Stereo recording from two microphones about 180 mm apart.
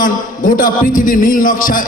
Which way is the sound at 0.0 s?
50° left (ahead or behind).